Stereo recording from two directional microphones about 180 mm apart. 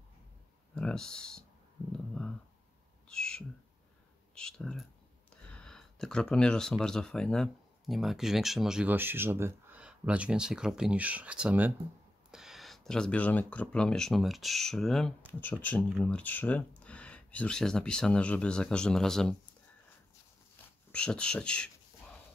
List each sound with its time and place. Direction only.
0.7 s speech: 5° left (ahead or behind)
1.9 s a sound: 5° left (ahead or behind)
3.1 s owl: 5° left (ahead or behind)
4.4 s speech: 5° left (ahead or behind)
20.9 s speech: 5° left (ahead or behind)